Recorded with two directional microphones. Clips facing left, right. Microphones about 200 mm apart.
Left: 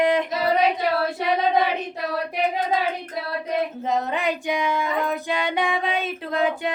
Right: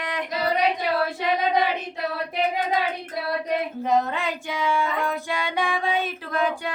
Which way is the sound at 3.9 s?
15° left (ahead or behind).